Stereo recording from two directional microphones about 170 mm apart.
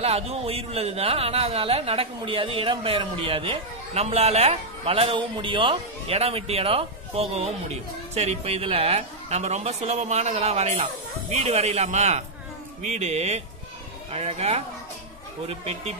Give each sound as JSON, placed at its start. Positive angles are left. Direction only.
{"t": 0.0, "sound": "a man's voice", "side_deg": -35}